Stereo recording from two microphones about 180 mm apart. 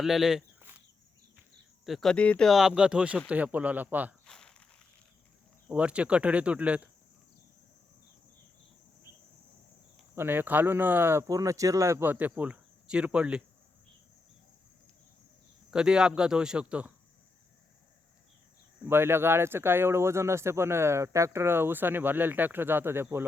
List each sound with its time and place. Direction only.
0.0 s speech: centre (ahead or behind)
1.8 s speech: centre (ahead or behind)
4.3 s walk: 5° left (ahead or behind)
5.6 s speech: 5° right (ahead or behind)
10.2 s speech: 10° right (ahead or behind)
15.7 s speech: 5° right (ahead or behind)
18.9 s speech: 15° right (ahead or behind)